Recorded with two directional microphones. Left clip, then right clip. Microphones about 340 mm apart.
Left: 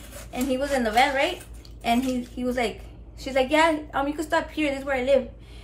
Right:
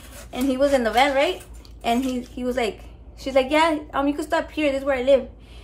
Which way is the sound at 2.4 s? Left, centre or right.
Centre.